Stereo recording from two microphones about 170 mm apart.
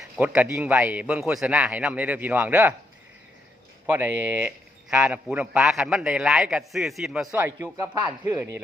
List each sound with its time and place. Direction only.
0.0 s speech: 10° right (ahead or behind)
3.8 s speech: 10° right (ahead or behind)